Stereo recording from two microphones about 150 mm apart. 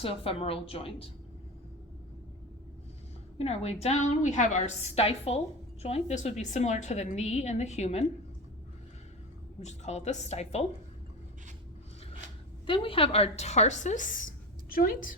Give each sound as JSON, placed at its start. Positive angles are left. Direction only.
{"t": 0.0, "sound": "a woman's voice", "side_deg": 40}
{"t": 3.3, "sound": "a woman's voice", "side_deg": 40}
{"t": 9.6, "sound": "a woman's voice", "side_deg": 50}
{"t": 12.6, "sound": "a woman's voice", "side_deg": 35}
{"t": 14.7, "sound": "a woman's voice", "side_deg": 70}